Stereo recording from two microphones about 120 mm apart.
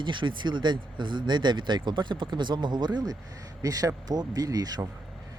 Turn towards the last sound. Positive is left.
turn(degrees=-30)  # may be behind; listen again after turning